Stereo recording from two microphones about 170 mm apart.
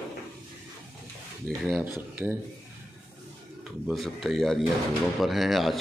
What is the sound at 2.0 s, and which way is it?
Speech, 10° right (ahead or behind).